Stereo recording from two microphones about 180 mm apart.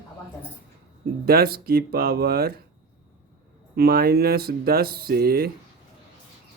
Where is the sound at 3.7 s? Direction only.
60° right (ahead or behind).